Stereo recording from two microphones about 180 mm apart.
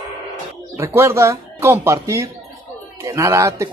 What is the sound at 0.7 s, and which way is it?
Speech, 15° right (ahead or behind).